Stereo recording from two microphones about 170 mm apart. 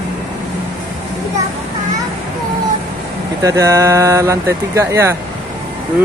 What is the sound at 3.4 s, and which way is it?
Speech, 15° right (ahead or behind).